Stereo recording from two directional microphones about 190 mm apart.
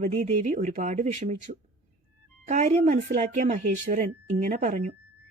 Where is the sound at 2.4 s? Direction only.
40° right (ahead or behind).